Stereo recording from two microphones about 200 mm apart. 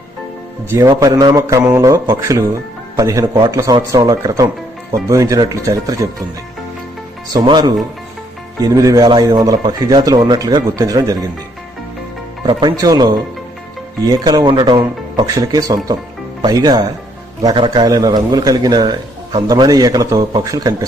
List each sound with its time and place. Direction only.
0.7 s a man's voice: 15° right (ahead or behind)
7.3 s a man's voice: 20° right (ahead or behind)
12.5 s a man's voice: 20° right (ahead or behind)